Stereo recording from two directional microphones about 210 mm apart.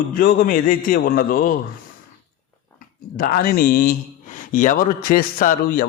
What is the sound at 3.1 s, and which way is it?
A man's voice, 45° left (ahead or behind).